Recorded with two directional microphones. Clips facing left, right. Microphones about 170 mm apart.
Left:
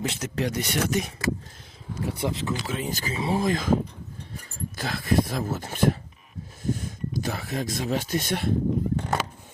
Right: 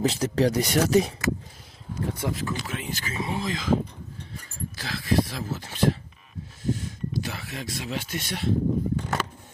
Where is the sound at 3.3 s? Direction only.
50° left (ahead or behind).